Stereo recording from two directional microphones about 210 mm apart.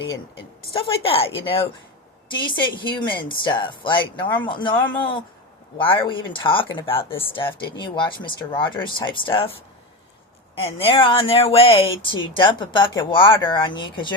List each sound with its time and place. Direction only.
0.1 s speech: 25° left (ahead or behind)